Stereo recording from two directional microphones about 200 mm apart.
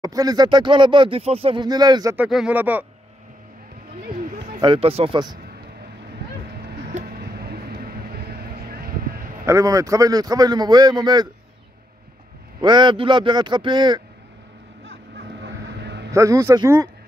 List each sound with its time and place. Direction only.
0.0 s speech: 20° right (ahead or behind)
2.1 s speech: 5° right (ahead or behind)
4.6 s speech: 25° right (ahead or behind)
6.9 s vehicle: 35° right (ahead or behind)
7.2 s vehicle: 50° right (ahead or behind)
9.5 s speech: 15° right (ahead or behind)
12.6 s speech: 25° right (ahead or behind)
14.9 s vehicle: 60° right (ahead or behind)
16.1 s speech: 15° right (ahead or behind)